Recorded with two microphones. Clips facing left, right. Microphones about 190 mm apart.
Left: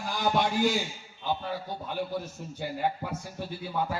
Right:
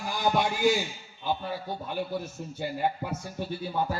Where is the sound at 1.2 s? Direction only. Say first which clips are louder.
Right 1 dB; 10° right (ahead or behind).